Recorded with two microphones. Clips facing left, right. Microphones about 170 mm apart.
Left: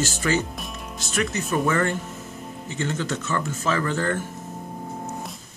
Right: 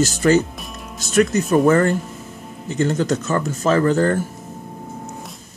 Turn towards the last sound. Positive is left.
turn(degrees=-40)  # may be behind; listen again after turning